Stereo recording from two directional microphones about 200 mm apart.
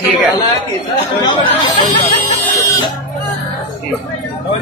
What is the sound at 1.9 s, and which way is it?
Music, 25° left (ahead or behind).